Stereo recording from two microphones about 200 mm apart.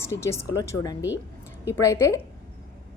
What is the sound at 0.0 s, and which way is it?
A woman's voice, 15° left (ahead or behind).